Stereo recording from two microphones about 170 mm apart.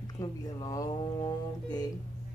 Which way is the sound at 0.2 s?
20° left (ahead or behind).